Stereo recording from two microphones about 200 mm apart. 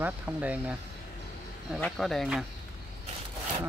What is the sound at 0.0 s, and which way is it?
Speech, 5° right (ahead or behind).